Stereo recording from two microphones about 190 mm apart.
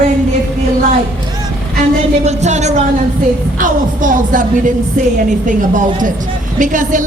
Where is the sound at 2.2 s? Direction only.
35° right (ahead or behind).